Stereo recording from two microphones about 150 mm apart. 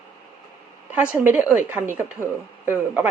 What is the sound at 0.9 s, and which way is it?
A woman's voice, 10° right (ahead or behind).